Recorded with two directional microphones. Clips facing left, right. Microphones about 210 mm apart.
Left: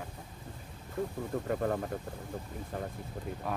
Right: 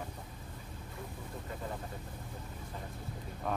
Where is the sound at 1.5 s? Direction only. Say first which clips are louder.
Left 11 dB; 65° left (ahead or behind).